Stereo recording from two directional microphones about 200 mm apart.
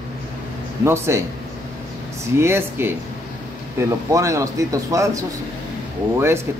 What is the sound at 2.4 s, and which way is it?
Speech, 10° right (ahead or behind).